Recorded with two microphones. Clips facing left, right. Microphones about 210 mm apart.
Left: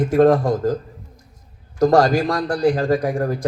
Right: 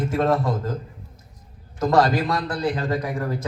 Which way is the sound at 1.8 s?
50° left (ahead or behind).